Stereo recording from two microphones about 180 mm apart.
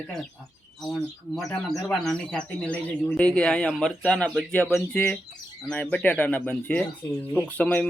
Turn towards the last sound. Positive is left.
turn(degrees=5)  # may be behind; listen again after turning